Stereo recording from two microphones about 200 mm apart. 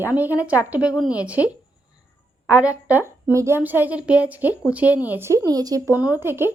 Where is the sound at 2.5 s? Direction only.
5° right (ahead or behind).